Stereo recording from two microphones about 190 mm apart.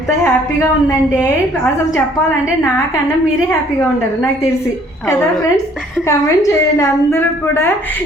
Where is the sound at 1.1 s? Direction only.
10° left (ahead or behind).